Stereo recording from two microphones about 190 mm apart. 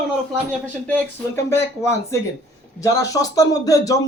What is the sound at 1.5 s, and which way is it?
Speech, 15° left (ahead or behind).